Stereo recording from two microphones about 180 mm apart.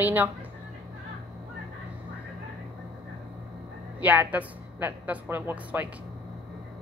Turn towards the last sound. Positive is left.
turn(degrees=-10)  # may be behind; listen again after turning